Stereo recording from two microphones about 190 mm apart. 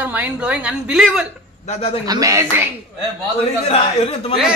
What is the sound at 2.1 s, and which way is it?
Speech, 20° right (ahead or behind).